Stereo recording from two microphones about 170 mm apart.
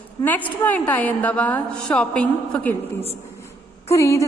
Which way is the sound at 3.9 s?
15° left (ahead or behind).